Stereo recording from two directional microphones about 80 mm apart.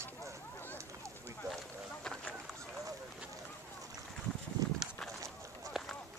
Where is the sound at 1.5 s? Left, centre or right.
Centre.